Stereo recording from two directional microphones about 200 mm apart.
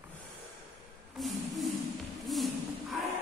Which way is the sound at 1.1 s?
Centre (ahead or behind).